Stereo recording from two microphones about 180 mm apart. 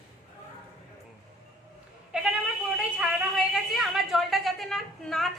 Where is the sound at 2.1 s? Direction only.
5° right (ahead or behind).